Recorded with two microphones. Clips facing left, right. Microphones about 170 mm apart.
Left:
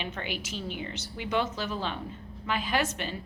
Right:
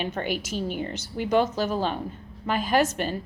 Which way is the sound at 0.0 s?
45° right (ahead or behind).